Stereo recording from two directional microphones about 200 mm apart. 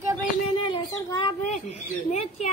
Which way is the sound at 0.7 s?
25° left (ahead or behind).